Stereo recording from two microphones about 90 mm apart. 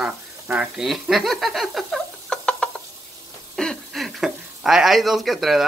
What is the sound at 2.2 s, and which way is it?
Rodents, 10° left (ahead or behind).